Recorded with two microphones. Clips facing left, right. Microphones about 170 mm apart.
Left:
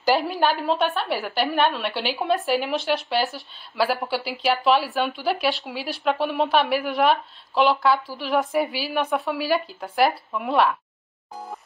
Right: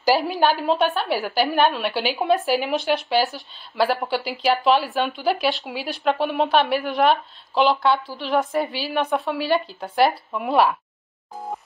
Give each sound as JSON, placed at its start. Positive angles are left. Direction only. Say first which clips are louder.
{"t": 0.0, "sound": "speech", "louder": "right 2 dB", "side_deg": 0}